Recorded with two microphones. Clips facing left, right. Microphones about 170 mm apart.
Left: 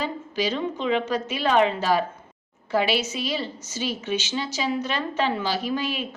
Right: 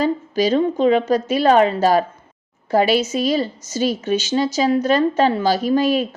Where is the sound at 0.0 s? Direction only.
40° right (ahead or behind).